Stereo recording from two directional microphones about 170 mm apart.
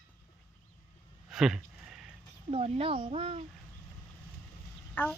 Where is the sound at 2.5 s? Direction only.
35° right (ahead or behind).